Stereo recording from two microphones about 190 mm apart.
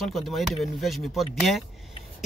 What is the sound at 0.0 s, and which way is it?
Speech, centre (ahead or behind).